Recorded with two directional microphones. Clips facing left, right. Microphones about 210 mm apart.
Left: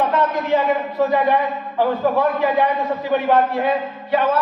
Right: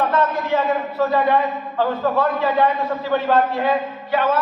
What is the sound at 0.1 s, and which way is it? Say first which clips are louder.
A man's voice: left 1 dB; 15° left (ahead or behind).